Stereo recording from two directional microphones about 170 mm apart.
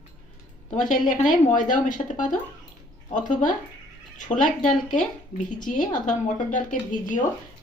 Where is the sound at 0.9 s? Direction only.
45° left (ahead or behind).